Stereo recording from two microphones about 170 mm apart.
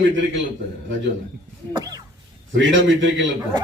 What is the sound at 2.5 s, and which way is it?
Speech, 90° right.